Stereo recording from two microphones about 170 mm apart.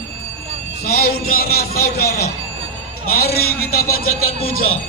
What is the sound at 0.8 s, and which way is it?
A man's voice, 65° left (ahead or behind).